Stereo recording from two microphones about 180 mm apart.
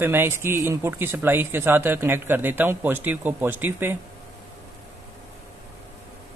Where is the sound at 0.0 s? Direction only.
10° right (ahead or behind).